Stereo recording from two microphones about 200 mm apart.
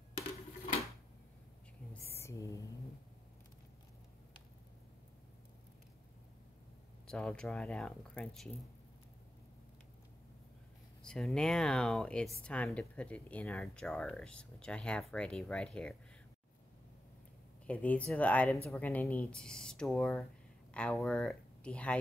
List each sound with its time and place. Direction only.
2.0 s a sound: 15° left (ahead or behind)
7.1 s speech: 5° left (ahead or behind)
11.0 s speech: 5° left (ahead or behind)
17.6 s speech: 5° left (ahead or behind)